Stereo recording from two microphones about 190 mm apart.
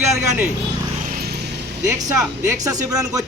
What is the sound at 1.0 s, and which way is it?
Vehicle, 55° right (ahead or behind).